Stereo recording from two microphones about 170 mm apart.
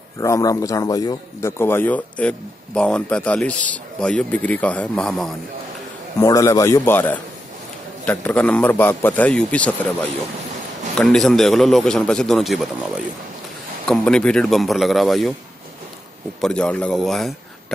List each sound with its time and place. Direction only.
0.2 s a man's voice: 20° left (ahead or behind); by 5.3 s 5° left (ahead or behind)
6.1 s a man's voice: 20° left (ahead or behind)
11.0 s a man's voice: 5° left (ahead or behind)
16.3 s a man's voice: 5° left (ahead or behind)